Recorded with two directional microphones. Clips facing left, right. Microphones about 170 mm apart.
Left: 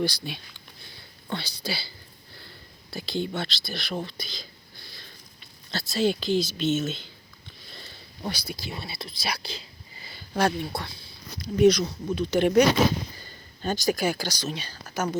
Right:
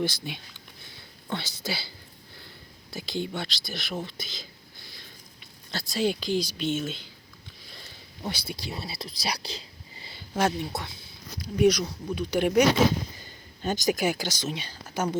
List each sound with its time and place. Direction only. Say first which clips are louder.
0.0 s speech: left 1 dB; 15° right (ahead or behind)
2.9 s speech: left 2 dB; 15° right (ahead or behind)
5.7 s speech: left 2 dB; 15° right (ahead or behind)
8.3 s speech: even; 30° right (ahead or behind)